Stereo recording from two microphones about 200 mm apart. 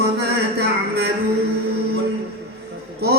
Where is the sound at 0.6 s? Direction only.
55° right (ahead or behind).